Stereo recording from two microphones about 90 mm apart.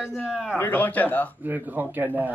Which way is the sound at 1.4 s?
20° right (ahead or behind).